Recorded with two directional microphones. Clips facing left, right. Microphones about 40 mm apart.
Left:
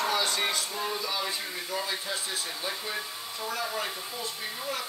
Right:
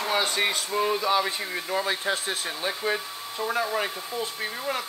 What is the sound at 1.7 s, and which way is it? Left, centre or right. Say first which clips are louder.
Speech: right 7 dB; right.